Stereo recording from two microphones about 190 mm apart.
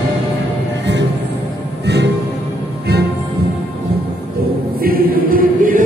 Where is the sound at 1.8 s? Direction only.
65° right (ahead or behind).